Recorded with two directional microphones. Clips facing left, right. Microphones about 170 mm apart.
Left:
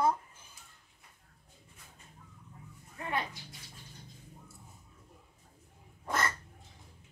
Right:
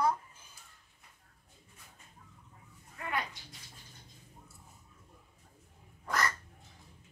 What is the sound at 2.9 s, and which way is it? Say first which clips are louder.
Speech: left 1 dB; 25° left (ahead or behind).